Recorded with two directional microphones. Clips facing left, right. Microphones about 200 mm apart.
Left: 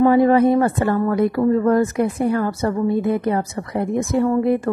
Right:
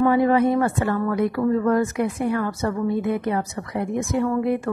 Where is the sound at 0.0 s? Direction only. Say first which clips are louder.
Left 4 dB; 35° left (ahead or behind).